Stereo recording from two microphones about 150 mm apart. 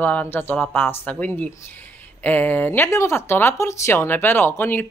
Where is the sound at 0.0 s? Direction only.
10° left (ahead or behind).